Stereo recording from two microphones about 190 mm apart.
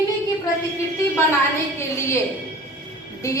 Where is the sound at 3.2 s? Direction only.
15° left (ahead or behind).